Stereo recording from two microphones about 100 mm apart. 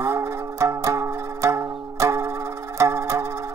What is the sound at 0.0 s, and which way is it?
Music, 25° right (ahead or behind).